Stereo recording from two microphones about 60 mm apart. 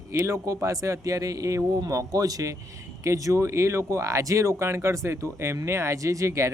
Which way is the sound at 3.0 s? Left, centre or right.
Right.